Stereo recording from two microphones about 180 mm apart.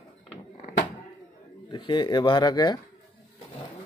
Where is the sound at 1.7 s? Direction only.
25° left (ahead or behind).